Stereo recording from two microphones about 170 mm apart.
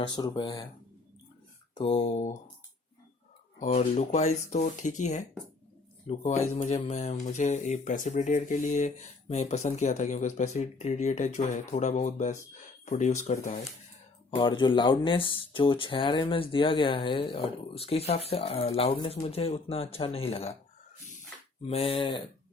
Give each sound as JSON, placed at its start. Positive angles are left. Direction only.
{"t": 0.0, "sound": "speech", "side_deg": 25}
{"t": 1.7, "sound": "speech", "side_deg": 35}
{"t": 3.6, "sound": "speech", "side_deg": 40}
{"t": 14.3, "sound": "speech", "side_deg": 30}
{"t": 21.6, "sound": "speech", "side_deg": 35}